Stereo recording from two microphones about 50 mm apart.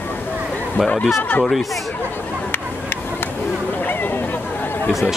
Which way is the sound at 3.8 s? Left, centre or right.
Left.